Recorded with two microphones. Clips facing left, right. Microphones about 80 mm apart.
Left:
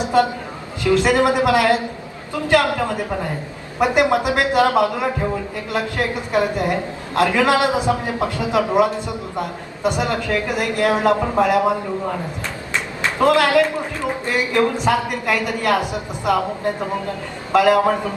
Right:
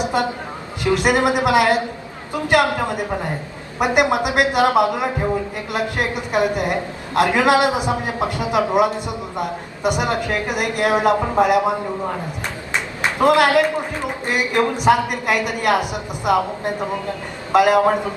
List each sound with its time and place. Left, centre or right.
0.9 s a man's voice: right
12.7 s a man's voice: right